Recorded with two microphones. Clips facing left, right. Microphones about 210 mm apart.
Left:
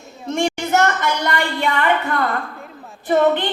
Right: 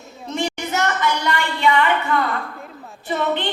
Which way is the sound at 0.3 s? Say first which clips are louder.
Left 5 dB; 50° left (ahead or behind).